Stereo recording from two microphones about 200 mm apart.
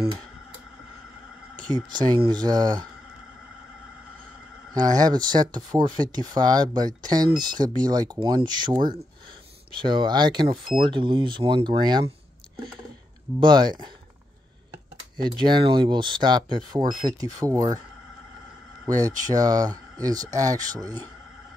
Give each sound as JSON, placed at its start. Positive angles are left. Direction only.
{"t": 1.7, "sound": "speech", "side_deg": -20}
{"t": 4.7, "sound": "speech", "side_deg": -20}
{"t": 13.4, "sound": "speech", "side_deg": -20}
{"t": 15.1, "sound": "speech", "side_deg": -20}
{"t": 18.9, "sound": "speech", "side_deg": -15}